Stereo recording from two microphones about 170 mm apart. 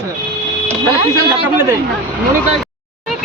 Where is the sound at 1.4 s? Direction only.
10° right (ahead or behind).